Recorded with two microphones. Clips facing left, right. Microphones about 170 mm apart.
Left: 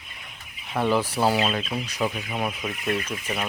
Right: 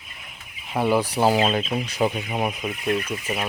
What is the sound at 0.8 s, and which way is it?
Speech, 15° right (ahead or behind).